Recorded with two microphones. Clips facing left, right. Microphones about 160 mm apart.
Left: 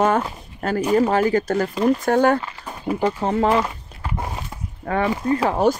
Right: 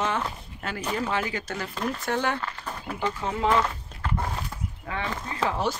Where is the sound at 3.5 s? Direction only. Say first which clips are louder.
Left 4 dB; 10° left (ahead or behind).